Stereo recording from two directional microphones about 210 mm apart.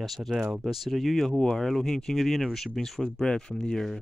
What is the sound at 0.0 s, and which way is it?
Speech, centre (ahead or behind).